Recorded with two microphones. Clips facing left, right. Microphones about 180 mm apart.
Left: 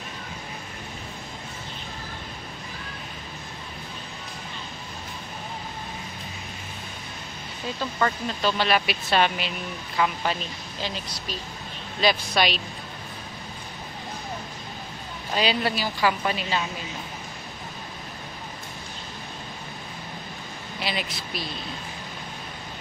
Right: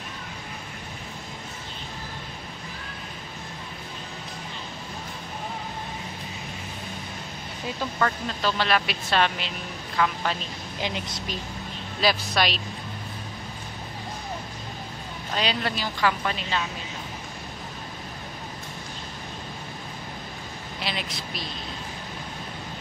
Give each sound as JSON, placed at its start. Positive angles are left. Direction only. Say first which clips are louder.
{"t": 8.0, "sound": "a woman's voice", "louder": "left 1 dB", "side_deg": 0}
{"t": 10.8, "sound": "speech", "louder": "right 2 dB", "side_deg": -20}
{"t": 12.0, "sound": "speech", "louder": "left 1 dB", "side_deg": 0}
{"t": 15.3, "sound": "a woman's voice", "louder": "left 3 dB", "side_deg": 5}
{"t": 20.8, "sound": "speech", "louder": "left 2 dB", "side_deg": 5}